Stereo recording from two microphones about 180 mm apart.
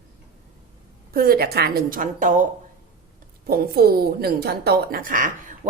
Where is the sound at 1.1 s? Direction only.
55° right (ahead or behind).